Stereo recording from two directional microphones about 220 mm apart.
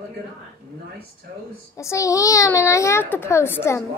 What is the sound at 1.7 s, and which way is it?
A child's voice, 15° left (ahead or behind).